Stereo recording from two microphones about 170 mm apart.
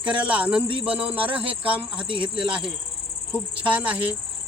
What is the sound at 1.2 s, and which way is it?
Speech, 30° right (ahead or behind).